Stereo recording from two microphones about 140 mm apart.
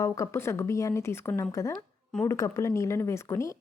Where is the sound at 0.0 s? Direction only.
20° left (ahead or behind).